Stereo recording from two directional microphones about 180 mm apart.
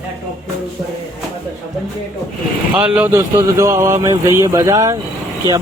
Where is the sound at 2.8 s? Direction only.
10° right (ahead or behind).